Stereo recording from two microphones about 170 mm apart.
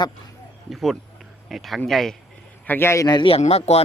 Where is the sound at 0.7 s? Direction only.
Centre (ahead or behind).